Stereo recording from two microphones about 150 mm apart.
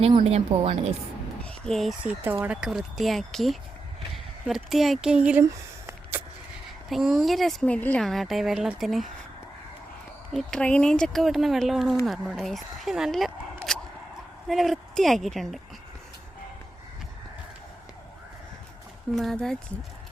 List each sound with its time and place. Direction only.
0.3 s speech: 40° right (ahead or behind)
1.5 s speech: 5° left (ahead or behind)
5.5 s a sound: 15° right (ahead or behind)
6.9 s speech: centre (ahead or behind)
10.3 s speech: 5° left (ahead or behind)
13.7 s emergency vehicle: 5° left (ahead or behind)
14.4 s speech: centre (ahead or behind)
19.1 s speech: centre (ahead or behind)